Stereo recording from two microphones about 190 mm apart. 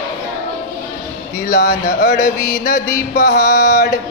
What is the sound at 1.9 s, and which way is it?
Music, 55° left (ahead or behind).